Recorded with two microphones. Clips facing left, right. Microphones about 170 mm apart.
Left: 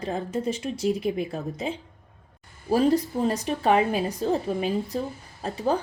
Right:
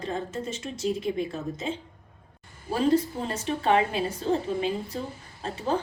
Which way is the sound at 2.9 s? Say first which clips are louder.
Left 2 dB; 35° left (ahead or behind).